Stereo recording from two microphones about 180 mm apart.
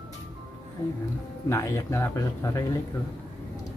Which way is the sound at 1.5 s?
15° left (ahead or behind).